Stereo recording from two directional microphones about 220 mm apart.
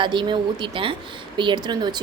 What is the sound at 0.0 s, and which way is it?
A woman's voice, 20° right (ahead or behind).